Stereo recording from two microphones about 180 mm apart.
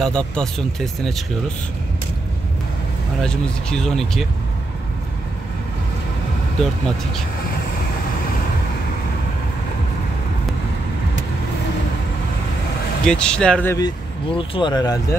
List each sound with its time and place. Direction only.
0.0 s speech: 5° left (ahead or behind)
3.2 s speech: 5° left (ahead or behind)
13.0 s speech: 5° left (ahead or behind)
13.7 s speech: 25° left (ahead or behind)